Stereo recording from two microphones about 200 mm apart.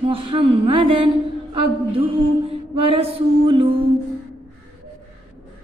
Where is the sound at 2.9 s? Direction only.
25° right (ahead or behind).